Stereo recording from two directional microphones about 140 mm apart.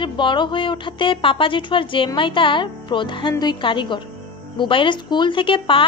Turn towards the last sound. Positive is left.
turn(degrees=35)  # may be behind; listen again after turning